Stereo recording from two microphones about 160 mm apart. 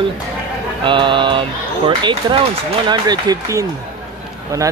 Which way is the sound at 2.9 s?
25° right (ahead or behind).